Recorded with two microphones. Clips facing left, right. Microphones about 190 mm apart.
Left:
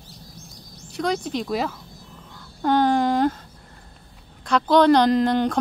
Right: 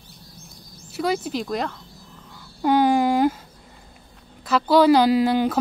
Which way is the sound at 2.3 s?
10° right (ahead or behind).